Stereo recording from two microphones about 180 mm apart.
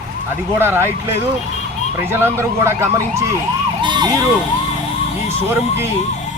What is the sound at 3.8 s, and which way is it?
Emergency vehicle, 25° right (ahead or behind).